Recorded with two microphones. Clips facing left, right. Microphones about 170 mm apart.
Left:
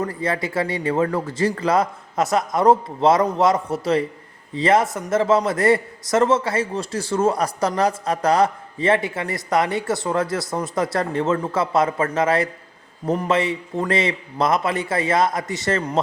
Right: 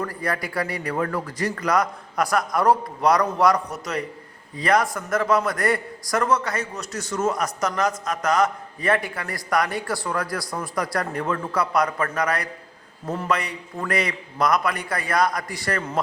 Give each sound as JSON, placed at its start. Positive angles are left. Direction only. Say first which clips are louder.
{"t": 0.0, "sound": "a man's voice", "louder": "left 4 dB", "side_deg": 25}